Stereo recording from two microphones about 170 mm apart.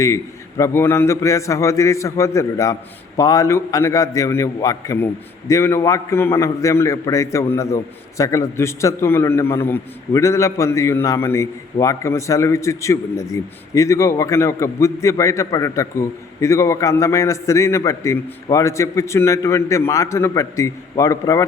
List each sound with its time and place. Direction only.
0.0 s a man's voice: 15° left (ahead or behind)